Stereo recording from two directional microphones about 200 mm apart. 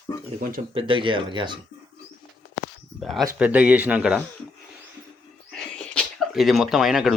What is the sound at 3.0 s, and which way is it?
Speech, centre (ahead or behind).